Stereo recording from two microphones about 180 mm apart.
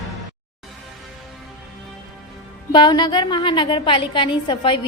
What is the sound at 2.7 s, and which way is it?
A woman's voice, 25° left (ahead or behind).